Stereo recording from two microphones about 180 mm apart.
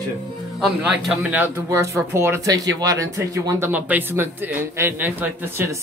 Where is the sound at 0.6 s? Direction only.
Centre (ahead or behind).